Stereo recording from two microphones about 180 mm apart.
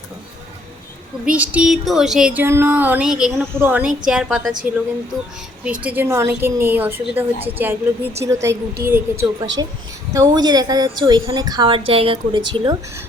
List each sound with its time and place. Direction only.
1.2 s a woman's voice: 5° right (ahead or behind)
5.8 s a woman's voice: 10° right (ahead or behind); by 12.7 s 25° right (ahead or behind)